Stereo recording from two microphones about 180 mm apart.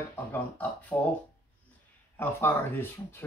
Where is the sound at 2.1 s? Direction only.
10° left (ahead or behind).